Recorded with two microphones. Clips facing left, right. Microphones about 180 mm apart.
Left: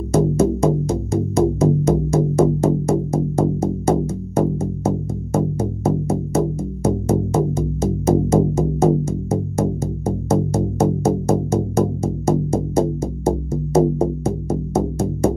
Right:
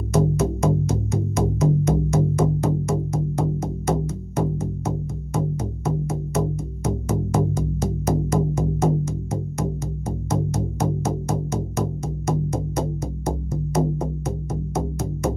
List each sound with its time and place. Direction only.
0.1 s music: 30° left (ahead or behind)